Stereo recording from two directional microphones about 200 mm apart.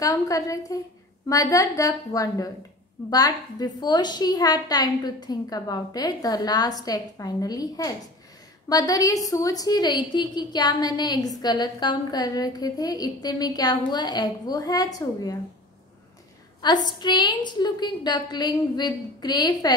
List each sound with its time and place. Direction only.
0.0 s a woman's voice: 15° left (ahead or behind)
16.6 s a woman's voice: 20° left (ahead or behind)